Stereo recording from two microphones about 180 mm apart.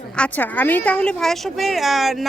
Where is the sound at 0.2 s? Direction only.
10° left (ahead or behind).